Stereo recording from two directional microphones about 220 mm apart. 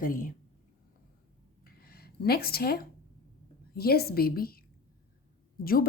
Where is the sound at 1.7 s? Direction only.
45° left (ahead or behind).